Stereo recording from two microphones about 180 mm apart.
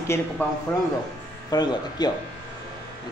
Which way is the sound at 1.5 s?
25° left (ahead or behind).